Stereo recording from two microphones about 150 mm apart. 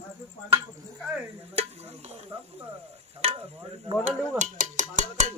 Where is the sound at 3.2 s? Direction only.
40° right (ahead or behind); by 5.3 s 55° right (ahead or behind).